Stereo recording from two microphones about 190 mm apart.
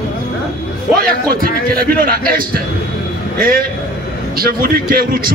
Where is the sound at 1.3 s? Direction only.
50° right (ahead or behind).